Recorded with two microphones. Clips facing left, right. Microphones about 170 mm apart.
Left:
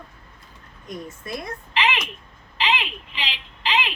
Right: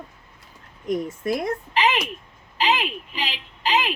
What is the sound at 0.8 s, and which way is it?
Speech, 90° right.